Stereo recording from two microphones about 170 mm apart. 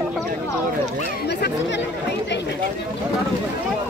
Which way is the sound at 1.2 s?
80° left.